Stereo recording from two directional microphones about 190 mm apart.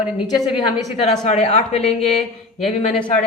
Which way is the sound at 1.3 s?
35° left (ahead or behind).